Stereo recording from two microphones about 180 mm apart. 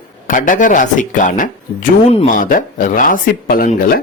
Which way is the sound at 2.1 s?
35° left (ahead or behind).